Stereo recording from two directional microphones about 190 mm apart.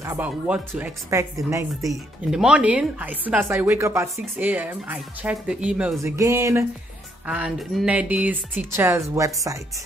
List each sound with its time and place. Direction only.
0.0 s speech: 10° right (ahead or behind)
1.9 s speech: 5° right (ahead or behind)